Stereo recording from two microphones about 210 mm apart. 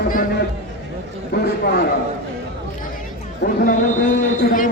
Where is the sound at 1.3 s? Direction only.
50° left (ahead or behind).